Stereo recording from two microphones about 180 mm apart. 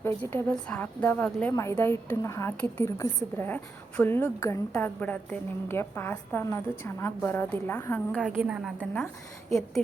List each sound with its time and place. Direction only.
0.2 s a woman's voice: 10° left (ahead or behind)
8.2 s a woman's voice: 5° right (ahead or behind)